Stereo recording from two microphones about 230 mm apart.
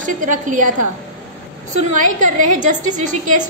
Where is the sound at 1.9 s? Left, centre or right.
Right.